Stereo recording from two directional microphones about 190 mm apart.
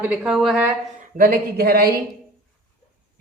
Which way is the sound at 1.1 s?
50° right (ahead or behind).